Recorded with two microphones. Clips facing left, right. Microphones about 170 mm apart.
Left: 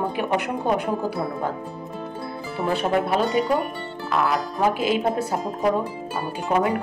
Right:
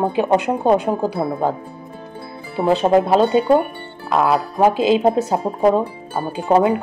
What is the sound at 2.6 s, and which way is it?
Speech, 20° right (ahead or behind).